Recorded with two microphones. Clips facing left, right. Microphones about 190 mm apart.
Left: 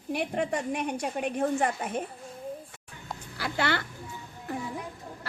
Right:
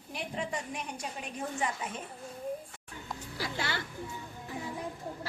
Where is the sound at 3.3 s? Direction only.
65° left (ahead or behind).